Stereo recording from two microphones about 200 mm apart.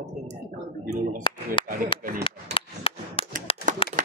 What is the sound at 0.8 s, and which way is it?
Speech, 25° left (ahead or behind).